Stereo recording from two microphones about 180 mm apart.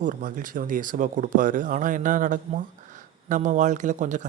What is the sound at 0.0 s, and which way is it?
Speech, 50° right (ahead or behind).